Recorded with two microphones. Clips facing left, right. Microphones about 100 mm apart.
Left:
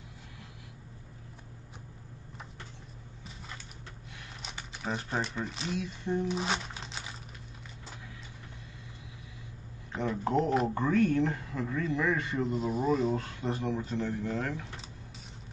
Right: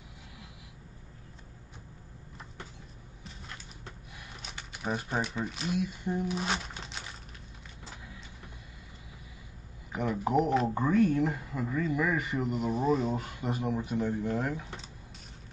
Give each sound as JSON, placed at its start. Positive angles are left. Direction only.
{"t": 4.4, "sound": "speech", "side_deg": -5}
{"t": 9.9, "sound": "speech", "side_deg": -10}